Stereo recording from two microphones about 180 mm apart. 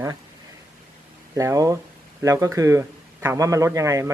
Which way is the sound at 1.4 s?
20° right (ahead or behind).